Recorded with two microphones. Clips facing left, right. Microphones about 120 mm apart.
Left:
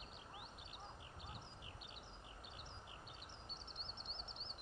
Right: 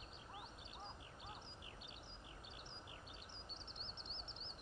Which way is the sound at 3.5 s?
20° right (ahead or behind).